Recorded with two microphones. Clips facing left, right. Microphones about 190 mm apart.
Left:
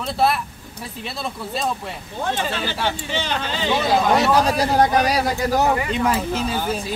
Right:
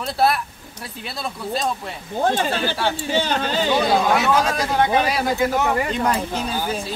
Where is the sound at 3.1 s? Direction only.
45° right (ahead or behind).